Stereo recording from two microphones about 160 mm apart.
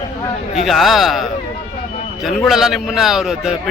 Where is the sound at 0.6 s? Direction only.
Centre (ahead or behind).